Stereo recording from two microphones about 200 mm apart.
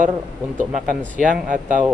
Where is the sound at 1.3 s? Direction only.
40° right (ahead or behind).